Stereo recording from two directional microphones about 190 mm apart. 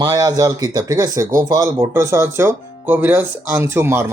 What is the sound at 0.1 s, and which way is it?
Speech, 20° right (ahead or behind).